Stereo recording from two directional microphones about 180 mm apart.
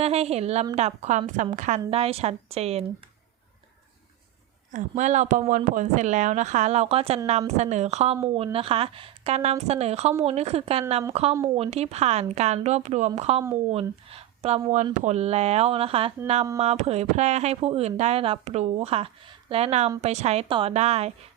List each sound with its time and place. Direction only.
0.0 s a woman's voice: 35° right (ahead or behind)
1.9 s speech: 35° right (ahead or behind)
4.7 s speech: 40° right (ahead or behind)